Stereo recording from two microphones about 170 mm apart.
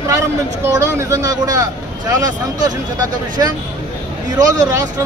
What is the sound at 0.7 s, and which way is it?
Speech, 15° right (ahead or behind).